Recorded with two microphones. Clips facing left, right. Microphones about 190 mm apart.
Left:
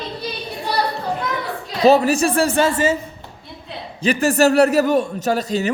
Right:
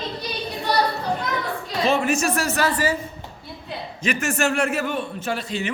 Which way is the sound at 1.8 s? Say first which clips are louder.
Left 7 dB; 40° left (ahead or behind).